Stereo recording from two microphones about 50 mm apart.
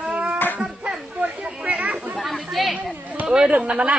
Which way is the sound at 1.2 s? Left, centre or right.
Right.